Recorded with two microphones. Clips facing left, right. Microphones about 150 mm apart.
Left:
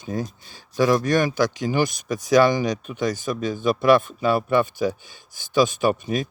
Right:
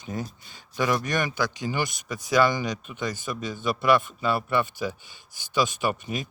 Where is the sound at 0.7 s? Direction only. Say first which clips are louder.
Left 6 dB; 35° left (ahead or behind).